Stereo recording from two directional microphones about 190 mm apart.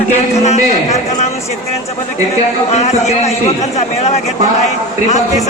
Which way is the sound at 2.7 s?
35° left (ahead or behind).